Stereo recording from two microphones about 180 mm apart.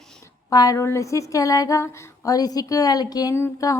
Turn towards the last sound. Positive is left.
turn(degrees=15)  # may be behind; listen again after turning